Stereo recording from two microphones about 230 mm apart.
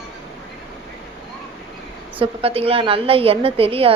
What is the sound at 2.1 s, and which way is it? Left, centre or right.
A woman's voice, right.